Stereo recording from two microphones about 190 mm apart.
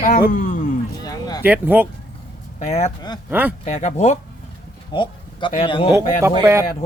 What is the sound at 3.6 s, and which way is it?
Speech, 35° left (ahead or behind).